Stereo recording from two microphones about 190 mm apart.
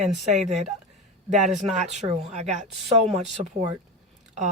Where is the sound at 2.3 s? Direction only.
35° right (ahead or behind).